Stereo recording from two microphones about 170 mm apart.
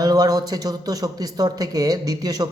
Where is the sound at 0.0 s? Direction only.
20° right (ahead or behind).